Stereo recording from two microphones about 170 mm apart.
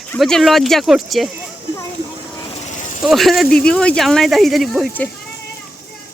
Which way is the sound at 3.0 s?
Centre (ahead or behind).